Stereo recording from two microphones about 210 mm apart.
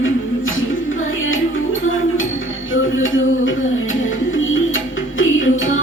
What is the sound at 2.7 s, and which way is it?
Music, 65° left (ahead or behind).